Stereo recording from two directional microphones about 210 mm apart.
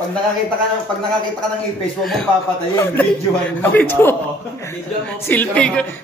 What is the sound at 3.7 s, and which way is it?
Speech, 10° left (ahead or behind).